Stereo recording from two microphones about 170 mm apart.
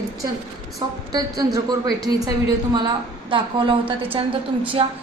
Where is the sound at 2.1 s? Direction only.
20° right (ahead or behind).